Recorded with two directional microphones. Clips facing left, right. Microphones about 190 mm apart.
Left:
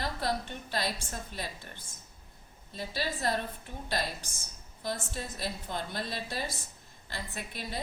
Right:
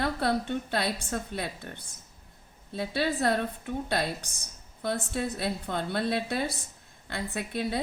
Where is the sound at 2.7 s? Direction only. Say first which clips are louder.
Right 7 dB; 65° right (ahead or behind).